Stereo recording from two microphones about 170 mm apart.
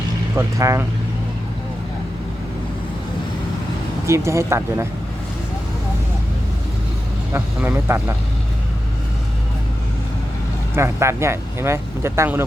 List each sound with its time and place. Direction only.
0.3 s speech: 15° right (ahead or behind)
4.0 s speech: 15° right (ahead or behind)
7.3 s speech: 15° right (ahead or behind)
10.8 s speech: 15° right (ahead or behind)